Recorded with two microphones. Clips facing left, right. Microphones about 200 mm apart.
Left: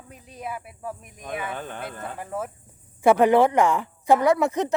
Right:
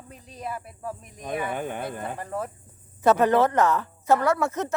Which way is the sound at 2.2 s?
5° left (ahead or behind).